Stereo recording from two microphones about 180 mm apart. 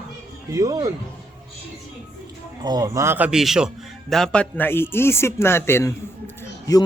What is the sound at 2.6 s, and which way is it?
A man's voice, 20° right (ahead or behind).